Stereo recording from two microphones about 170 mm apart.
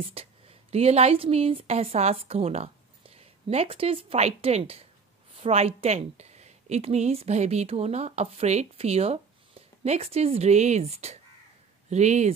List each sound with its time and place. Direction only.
0.0 s a woman's voice: 35° right (ahead or behind)